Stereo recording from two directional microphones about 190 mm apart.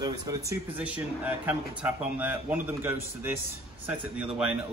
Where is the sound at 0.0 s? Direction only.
20° right (ahead or behind).